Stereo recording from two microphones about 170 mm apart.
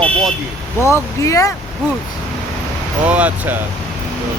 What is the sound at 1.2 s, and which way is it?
Speech, 20° left (ahead or behind).